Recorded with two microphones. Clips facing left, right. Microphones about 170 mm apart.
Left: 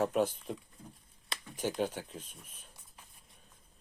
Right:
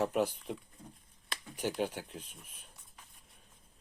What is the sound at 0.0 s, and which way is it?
Speech, 10° right (ahead or behind).